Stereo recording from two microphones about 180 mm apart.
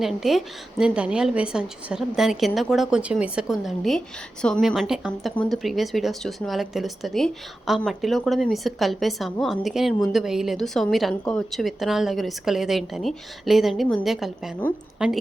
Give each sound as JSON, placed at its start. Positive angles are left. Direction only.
{"t": 0.0, "sound": "a woman's voice", "side_deg": 0}